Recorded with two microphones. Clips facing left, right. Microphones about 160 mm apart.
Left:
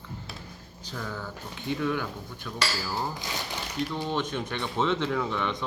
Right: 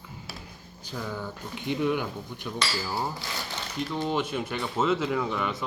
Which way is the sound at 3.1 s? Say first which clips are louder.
Left 1 dB; 15° left (ahead or behind).